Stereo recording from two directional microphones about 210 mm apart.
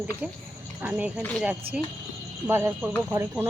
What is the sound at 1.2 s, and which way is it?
Speech, 5° left (ahead or behind).